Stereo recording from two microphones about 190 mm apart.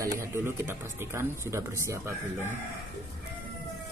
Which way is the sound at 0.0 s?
15° right (ahead or behind).